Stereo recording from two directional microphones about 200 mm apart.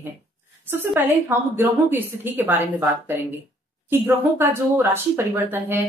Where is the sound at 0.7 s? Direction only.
10° right (ahead or behind).